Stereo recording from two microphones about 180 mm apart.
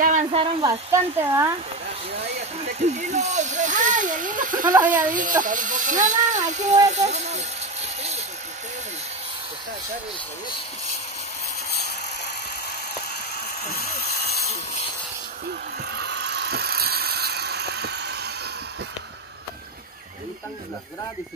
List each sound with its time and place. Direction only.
0.0 s a sound: 40° right (ahead or behind)
0.7 s speech: 15° right (ahead or behind)
2.9 s speech: 40° right (ahead or behind)
13.7 s speech: 55° left (ahead or behind)
16.0 s vehicle: 70° right (ahead or behind)